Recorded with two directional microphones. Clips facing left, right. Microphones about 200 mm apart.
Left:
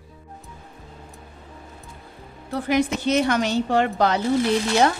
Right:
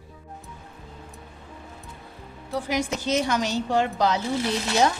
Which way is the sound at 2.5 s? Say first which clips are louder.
Left 5 dB; 60° left (ahead or behind).